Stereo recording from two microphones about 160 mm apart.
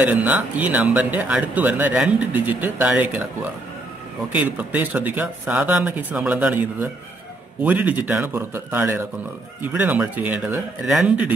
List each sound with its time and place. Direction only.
0.0 s speech: 10° right (ahead or behind)
4.3 s speech: 10° right (ahead or behind)